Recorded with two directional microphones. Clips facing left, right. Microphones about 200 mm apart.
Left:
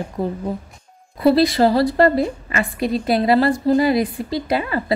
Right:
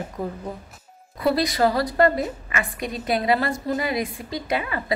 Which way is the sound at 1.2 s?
30° left (ahead or behind).